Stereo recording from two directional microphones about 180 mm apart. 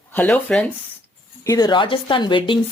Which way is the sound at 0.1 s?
10° left (ahead or behind).